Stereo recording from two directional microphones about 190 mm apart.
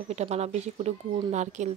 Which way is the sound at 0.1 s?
35° right (ahead or behind).